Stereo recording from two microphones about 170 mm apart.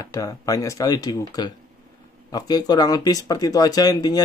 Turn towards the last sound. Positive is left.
turn(degrees=25)  # may be behind; listen again after turning